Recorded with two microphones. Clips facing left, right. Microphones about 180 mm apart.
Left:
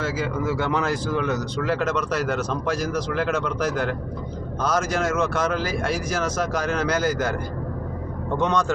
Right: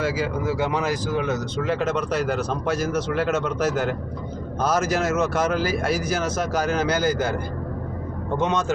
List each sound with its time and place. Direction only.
0.0 s speech: 15° right (ahead or behind); by 2.5 s 30° right (ahead or behind)
2.7 s a man's voice: 5° right (ahead or behind)
6.2 s speech: 30° right (ahead or behind)
8.4 s speech: 20° right (ahead or behind)